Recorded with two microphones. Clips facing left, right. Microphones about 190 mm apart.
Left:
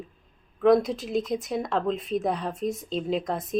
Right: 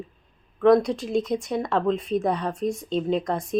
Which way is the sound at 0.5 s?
Centre (ahead or behind).